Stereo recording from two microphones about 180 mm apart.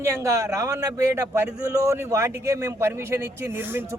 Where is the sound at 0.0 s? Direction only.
15° right (ahead or behind).